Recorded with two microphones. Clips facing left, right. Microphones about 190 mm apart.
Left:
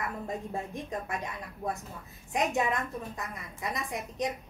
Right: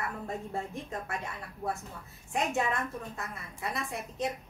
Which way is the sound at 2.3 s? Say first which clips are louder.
Left 2 dB; 15° left (ahead or behind).